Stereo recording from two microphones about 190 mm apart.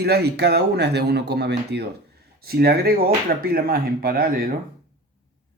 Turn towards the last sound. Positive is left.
turn(degrees=-50)  # may be behind; listen again after turning